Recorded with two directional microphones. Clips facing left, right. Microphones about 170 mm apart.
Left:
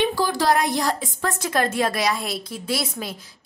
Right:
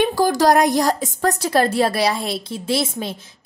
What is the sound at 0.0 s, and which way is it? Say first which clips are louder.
A woman's voice: right 5 dB; 45° right (ahead or behind).